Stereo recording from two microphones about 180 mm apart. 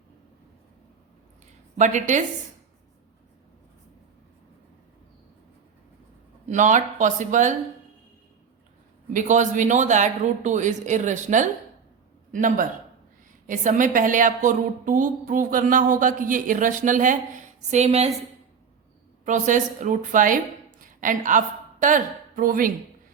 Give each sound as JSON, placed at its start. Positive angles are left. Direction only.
{"t": 1.8, "sound": "a woman's voice", "side_deg": -45}
{"t": 6.4, "sound": "a woman's voice", "side_deg": -40}
{"t": 9.1, "sound": "a woman's voice", "side_deg": -45}
{"t": 19.2, "sound": "speech", "side_deg": -45}